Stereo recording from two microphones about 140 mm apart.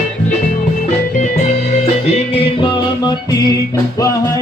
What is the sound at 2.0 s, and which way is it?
Music, 40° left (ahead or behind).